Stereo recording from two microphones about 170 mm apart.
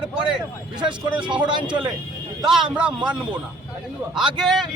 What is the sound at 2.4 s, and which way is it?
Speech, 5° right (ahead or behind).